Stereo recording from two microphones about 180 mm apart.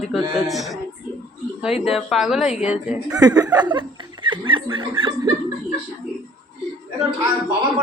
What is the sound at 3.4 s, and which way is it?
Speech, 20° right (ahead or behind).